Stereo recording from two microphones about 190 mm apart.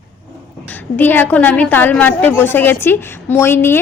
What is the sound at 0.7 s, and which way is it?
A woman's voice, 10° left (ahead or behind).